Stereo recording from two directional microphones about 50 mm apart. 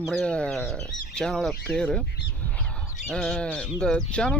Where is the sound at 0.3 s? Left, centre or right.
Left.